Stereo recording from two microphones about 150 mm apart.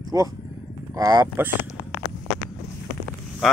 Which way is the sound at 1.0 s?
25° right (ahead or behind).